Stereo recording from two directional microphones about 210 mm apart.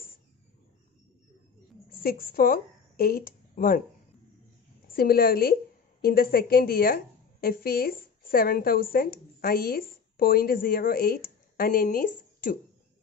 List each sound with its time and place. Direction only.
2.0 s a woman's voice: 45° left (ahead or behind)
4.9 s a woman's voice: 45° left (ahead or behind)